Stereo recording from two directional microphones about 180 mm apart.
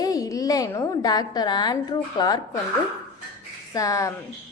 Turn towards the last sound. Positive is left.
turn(degrees=20)  # may be behind; listen again after turning